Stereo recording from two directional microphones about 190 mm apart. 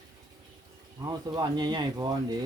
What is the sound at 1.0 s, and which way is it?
Speech, 20° right (ahead or behind).